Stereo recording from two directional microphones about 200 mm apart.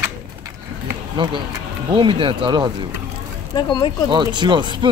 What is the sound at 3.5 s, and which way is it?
Speech, 20° left (ahead or behind).